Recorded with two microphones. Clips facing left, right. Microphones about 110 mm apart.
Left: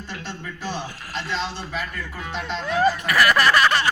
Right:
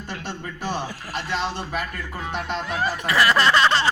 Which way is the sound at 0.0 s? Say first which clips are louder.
Right 2 dB; 50° right (ahead or behind).